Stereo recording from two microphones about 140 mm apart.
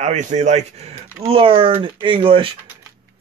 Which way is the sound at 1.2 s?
40° right (ahead or behind).